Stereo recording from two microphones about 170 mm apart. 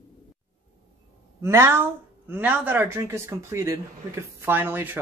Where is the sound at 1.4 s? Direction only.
15° right (ahead or behind).